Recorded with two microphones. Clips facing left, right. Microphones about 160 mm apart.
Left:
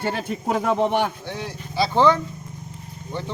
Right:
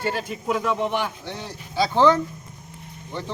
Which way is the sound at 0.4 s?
45° left (ahead or behind).